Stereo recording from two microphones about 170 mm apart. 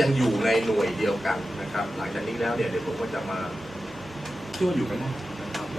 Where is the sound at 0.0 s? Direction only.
Centre (ahead or behind).